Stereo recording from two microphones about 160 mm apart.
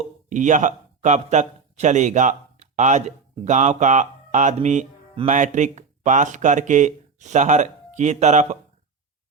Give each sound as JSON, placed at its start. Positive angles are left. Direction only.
{"t": 0.3, "sound": "a man's voice", "side_deg": -50}